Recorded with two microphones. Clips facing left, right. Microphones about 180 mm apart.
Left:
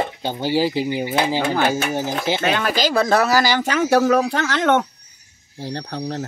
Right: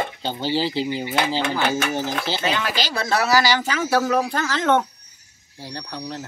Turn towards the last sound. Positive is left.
turn(degrees=55)  # may be behind; listen again after turning